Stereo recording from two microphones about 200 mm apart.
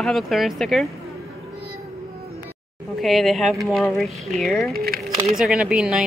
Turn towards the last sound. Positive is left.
turn(degrees=-5)  # may be behind; listen again after turning